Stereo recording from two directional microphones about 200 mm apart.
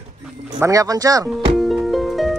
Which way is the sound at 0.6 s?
15° right (ahead or behind).